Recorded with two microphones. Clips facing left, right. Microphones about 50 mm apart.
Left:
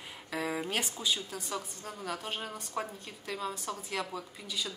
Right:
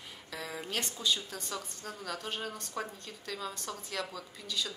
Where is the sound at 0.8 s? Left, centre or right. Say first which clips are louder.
Even; centre.